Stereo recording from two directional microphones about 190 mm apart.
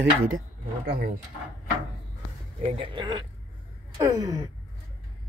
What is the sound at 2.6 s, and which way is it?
Speech, 30° right (ahead or behind).